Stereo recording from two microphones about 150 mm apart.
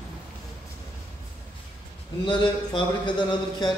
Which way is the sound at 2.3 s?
30° left (ahead or behind).